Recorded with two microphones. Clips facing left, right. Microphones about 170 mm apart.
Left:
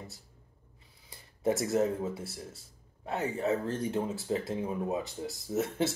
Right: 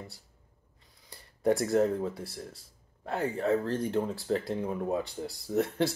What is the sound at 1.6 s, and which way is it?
Speech, 5° left (ahead or behind).